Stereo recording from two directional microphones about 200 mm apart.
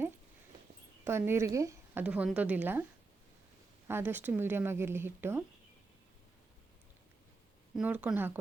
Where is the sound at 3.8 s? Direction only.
10° right (ahead or behind).